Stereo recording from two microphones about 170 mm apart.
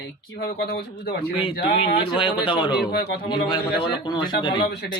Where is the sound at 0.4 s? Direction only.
65° left (ahead or behind).